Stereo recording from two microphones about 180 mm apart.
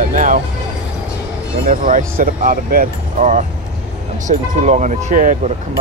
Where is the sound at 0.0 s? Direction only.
45° right (ahead or behind).